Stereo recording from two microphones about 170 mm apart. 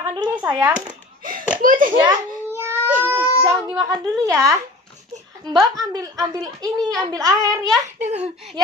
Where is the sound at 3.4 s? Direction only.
25° right (ahead or behind).